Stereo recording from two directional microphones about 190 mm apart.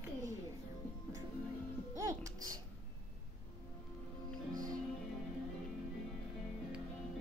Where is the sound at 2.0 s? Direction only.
15° right (ahead or behind).